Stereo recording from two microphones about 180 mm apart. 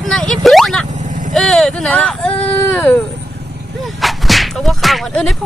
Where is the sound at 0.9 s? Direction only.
45° right (ahead or behind).